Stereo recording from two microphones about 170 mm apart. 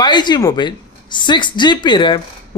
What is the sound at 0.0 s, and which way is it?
Speech, 25° left (ahead or behind).